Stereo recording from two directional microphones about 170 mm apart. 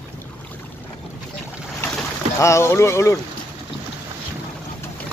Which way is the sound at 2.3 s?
15° left (ahead or behind).